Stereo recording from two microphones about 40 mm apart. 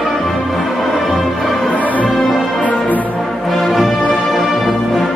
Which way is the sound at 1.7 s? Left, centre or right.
Left.